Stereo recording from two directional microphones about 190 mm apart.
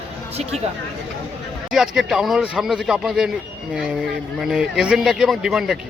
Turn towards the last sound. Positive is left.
turn(degrees=-5)  # may be behind; listen again after turning